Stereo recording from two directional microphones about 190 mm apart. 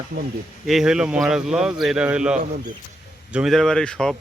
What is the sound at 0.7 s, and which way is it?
A man's voice, centre (ahead or behind).